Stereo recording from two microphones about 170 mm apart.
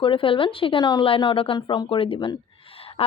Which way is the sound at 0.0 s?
30° left (ahead or behind).